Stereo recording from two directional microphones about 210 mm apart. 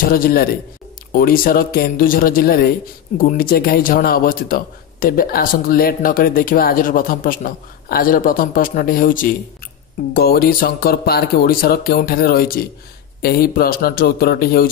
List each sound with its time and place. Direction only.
0.0 s a man's voice: 45° left (ahead or behind)